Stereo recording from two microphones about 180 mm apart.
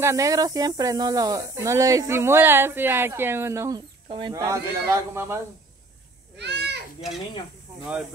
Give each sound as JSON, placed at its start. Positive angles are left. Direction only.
{"t": 0.0, "sound": "speech", "side_deg": -15}
{"t": 6.3, "sound": "goat", "side_deg": -70}